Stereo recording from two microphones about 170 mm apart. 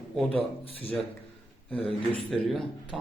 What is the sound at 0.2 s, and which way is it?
Speech, 5° left (ahead or behind).